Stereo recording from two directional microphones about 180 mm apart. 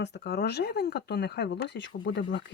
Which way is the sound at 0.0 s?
65° left (ahead or behind).